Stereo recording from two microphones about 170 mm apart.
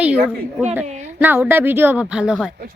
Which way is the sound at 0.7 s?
10° right (ahead or behind).